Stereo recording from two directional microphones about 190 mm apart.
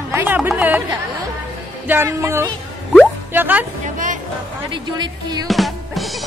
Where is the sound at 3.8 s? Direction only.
45° right (ahead or behind).